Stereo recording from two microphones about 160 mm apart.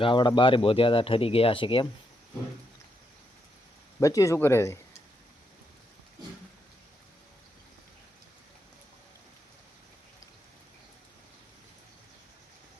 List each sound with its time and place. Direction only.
0.0 s speech: 30° left (ahead or behind)
4.0 s speech: 20° left (ahead or behind)